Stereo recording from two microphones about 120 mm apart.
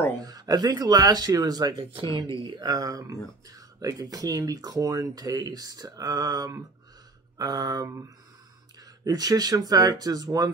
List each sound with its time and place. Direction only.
0.2 s speech: 35° right (ahead or behind)
9.0 s speech: 30° right (ahead or behind)